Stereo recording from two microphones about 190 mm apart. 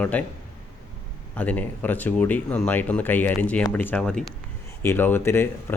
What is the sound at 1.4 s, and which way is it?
Speech, 10° left (ahead or behind).